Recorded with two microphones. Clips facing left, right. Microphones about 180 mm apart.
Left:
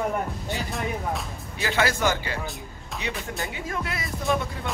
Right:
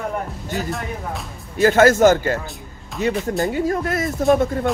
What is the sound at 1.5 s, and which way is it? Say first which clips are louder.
Speech: right 12 dB; 45° right (ahead or behind).